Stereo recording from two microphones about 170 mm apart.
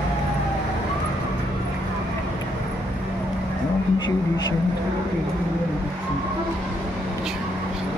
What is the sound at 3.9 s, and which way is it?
Speech, 25° left (ahead or behind).